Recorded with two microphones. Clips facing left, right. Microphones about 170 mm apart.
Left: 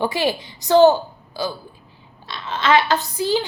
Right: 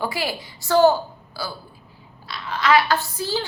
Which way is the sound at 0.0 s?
20° left (ahead or behind).